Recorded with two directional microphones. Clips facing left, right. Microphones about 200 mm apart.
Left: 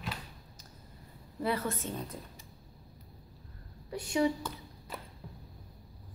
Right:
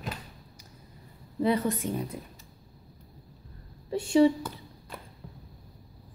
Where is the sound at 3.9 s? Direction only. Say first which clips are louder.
Right 9 dB; 30° right (ahead or behind).